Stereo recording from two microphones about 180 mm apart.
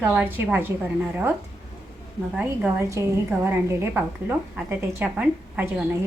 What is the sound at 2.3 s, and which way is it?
A woman's voice, 10° right (ahead or behind).